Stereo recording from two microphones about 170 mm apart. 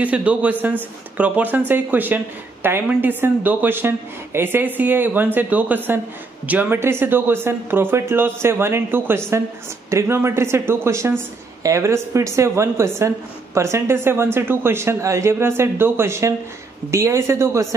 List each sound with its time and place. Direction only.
0.0 s a woman's voice: 10° right (ahead or behind)